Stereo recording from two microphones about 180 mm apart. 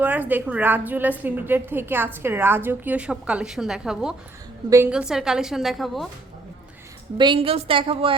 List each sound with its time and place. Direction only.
0.0 s a woman's voice: 10° right (ahead or behind)
7.2 s a woman's voice: 30° right (ahead or behind)